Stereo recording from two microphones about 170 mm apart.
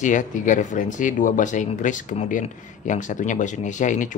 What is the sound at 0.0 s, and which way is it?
Speech, 45° left (ahead or behind).